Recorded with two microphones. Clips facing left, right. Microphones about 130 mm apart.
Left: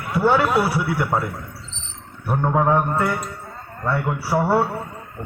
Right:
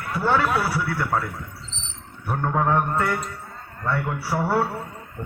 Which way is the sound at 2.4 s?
10° left (ahead or behind).